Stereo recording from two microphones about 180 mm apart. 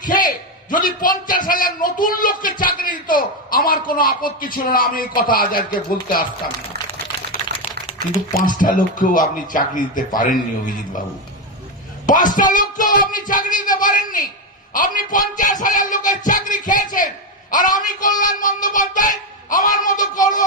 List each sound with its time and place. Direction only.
0.0 s a man's voice: 50° left (ahead or behind)
7.5 s typing: 65° right (ahead or behind)
8.4 s a man's voice: 50° left (ahead or behind)
12.1 s a man's voice: 45° left (ahead or behind)